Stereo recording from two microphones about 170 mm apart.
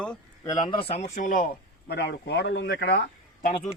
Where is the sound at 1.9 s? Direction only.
80° left.